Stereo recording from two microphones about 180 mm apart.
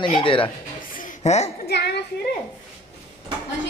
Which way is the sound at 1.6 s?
65° left (ahead or behind).